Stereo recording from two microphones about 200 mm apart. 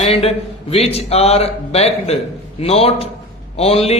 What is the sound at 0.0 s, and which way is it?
A man's voice, 30° left (ahead or behind).